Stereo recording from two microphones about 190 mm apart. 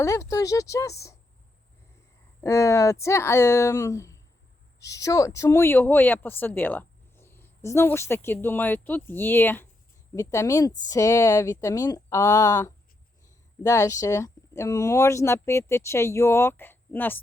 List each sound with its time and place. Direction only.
0.0 s speech: 15° left (ahead or behind)
2.4 s speech: 15° left (ahead or behind)